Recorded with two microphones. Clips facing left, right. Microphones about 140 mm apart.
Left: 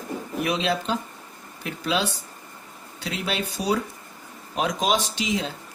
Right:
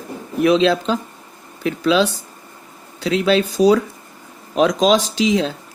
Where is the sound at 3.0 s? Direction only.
90° right.